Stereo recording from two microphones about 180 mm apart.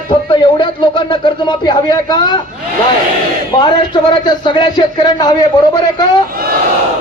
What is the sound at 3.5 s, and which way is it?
A man's voice, 25° left (ahead or behind).